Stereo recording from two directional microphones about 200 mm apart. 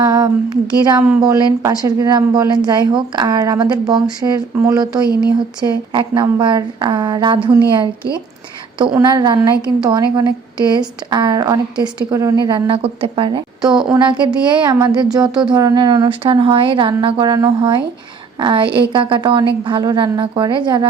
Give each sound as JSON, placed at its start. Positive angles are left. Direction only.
{"t": 0.0, "sound": "a woman's voice", "side_deg": -20}
{"t": 9.0, "sound": "a woman's voice", "side_deg": -20}